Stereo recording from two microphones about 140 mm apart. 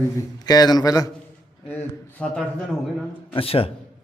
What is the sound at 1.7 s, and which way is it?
Speech, 10° left (ahead or behind).